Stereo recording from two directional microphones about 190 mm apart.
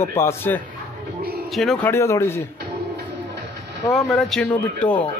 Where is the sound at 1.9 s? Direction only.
15° left (ahead or behind).